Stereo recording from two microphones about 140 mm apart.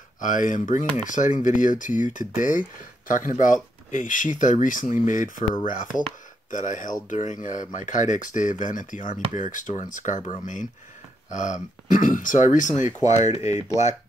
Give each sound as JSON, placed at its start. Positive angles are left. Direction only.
{"t": 0.2, "sound": "speech", "side_deg": 70}